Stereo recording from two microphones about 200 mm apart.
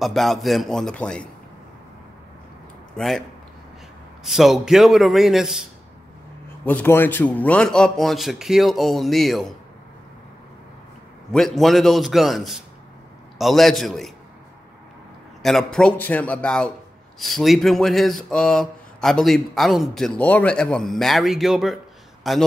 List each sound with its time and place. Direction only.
0.0 s speech: centre (ahead or behind)
3.0 s speech: centre (ahead or behind)
6.6 s speech: 10° left (ahead or behind)
11.3 s speech: centre (ahead or behind)
15.4 s speech: centre (ahead or behind)